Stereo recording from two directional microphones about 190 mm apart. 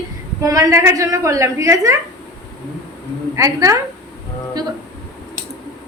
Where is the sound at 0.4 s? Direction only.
15° right (ahead or behind).